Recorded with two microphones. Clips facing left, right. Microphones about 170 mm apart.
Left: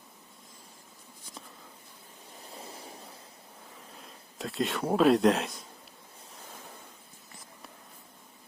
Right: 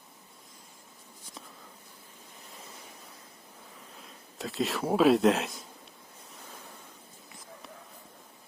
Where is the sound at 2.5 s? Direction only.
30° left (ahead or behind).